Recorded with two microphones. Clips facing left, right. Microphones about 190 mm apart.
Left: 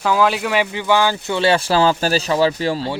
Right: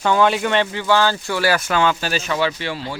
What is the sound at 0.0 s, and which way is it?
Speech, centre (ahead or behind).